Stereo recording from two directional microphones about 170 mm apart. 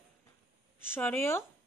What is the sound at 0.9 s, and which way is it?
Speech, 10° left (ahead or behind).